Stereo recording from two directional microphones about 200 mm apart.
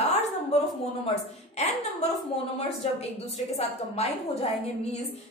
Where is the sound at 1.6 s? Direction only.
35° left (ahead or behind).